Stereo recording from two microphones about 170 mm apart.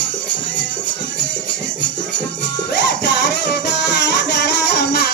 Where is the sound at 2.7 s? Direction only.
90° left.